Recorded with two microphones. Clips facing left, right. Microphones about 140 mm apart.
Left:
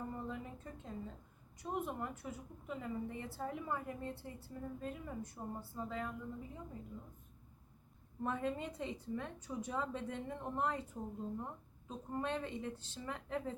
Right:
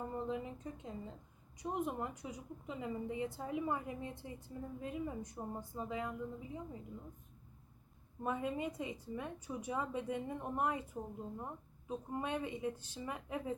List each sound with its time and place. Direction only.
0.3 s a woman's voice: 15° right (ahead or behind)
8.2 s a woman's voice: 10° right (ahead or behind)